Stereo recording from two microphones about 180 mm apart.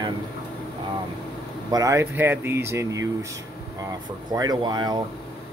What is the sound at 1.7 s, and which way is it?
Speech, 15° right (ahead or behind).